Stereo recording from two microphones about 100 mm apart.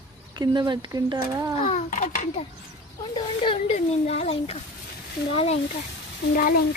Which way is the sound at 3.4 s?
90° left.